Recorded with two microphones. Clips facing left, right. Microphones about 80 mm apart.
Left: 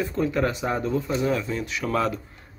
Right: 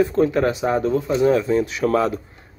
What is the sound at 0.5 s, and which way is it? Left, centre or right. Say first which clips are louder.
Speech: right 6 dB; centre.